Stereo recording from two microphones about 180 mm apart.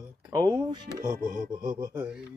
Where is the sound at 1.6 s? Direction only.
20° right (ahead or behind).